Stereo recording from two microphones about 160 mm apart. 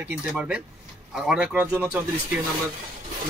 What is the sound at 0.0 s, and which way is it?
Speech, 10° right (ahead or behind).